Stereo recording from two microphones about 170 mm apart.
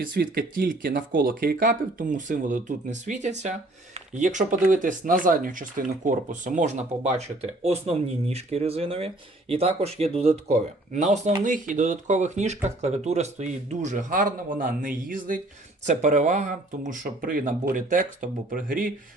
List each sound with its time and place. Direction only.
0.0 s speech: 60° right (ahead or behind)